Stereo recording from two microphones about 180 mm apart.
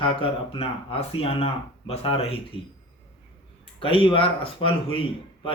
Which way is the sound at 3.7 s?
30° left (ahead or behind).